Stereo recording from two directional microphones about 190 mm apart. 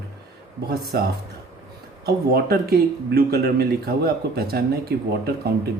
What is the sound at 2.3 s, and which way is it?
Speech, 55° right (ahead or behind).